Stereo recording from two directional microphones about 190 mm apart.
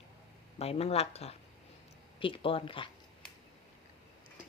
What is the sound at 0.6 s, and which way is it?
Speech, 30° left (ahead or behind).